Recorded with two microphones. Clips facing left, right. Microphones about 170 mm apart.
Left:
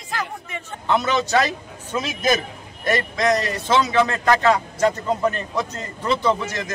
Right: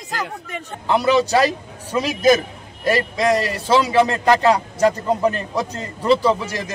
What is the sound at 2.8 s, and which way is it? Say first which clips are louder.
Speech: right 2 dB; 30° right (ahead or behind).